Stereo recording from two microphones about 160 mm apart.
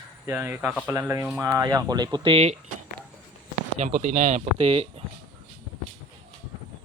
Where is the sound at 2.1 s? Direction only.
35° right (ahead or behind).